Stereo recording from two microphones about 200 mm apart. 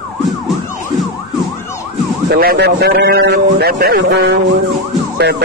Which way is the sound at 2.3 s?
50° right (ahead or behind).